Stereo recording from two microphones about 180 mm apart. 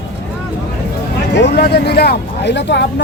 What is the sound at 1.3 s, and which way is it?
Speech, 70° left (ahead or behind).